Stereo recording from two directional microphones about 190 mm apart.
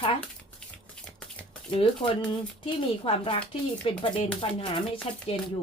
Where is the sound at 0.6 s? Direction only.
5° left (ahead or behind).